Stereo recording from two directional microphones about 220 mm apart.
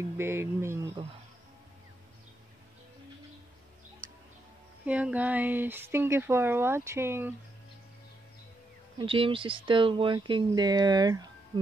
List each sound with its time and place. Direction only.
0.0 s speech: 10° right (ahead or behind)
4.8 s speech: 5° right (ahead or behind)
8.9 s speech: 25° right (ahead or behind)